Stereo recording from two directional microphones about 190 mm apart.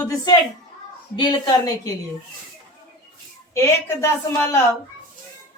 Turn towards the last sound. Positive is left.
turn(degrees=15)  # may be behind; listen again after turning